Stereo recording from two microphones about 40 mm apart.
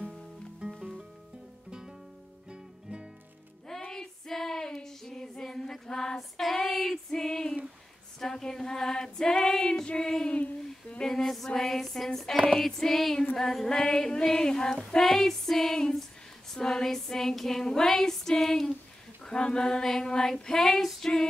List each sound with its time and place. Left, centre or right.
0.6 s music: centre
3.8 s female singing: centre
12.5 s child singing: centre
14.9 s female singing: centre
17.4 s child singing: centre
19.2 s child singing: left